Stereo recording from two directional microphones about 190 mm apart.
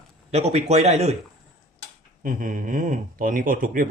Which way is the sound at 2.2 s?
45° right (ahead or behind).